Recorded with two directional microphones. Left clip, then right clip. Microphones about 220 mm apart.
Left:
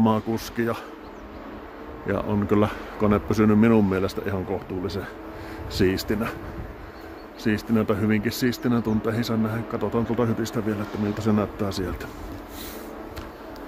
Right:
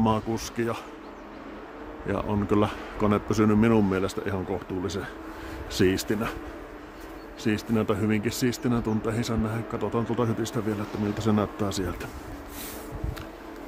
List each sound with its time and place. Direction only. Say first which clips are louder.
0.0 s speech: left 2 dB; 5° right (ahead or behind)
2.0 s speech: left 3 dB; 5° right (ahead or behind)
7.4 s speech: left 2 dB; 10° right (ahead or behind)